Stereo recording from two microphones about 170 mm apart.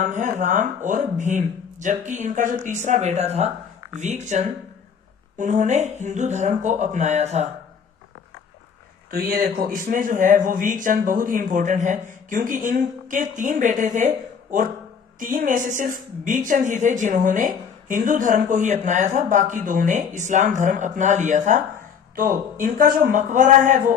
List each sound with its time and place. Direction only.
0.0 s a woman's voice: 45° right (ahead or behind)
9.0 s a woman's voice: 60° right (ahead or behind)